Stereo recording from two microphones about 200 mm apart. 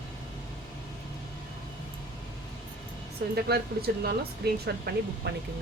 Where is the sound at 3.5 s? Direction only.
50° right (ahead or behind).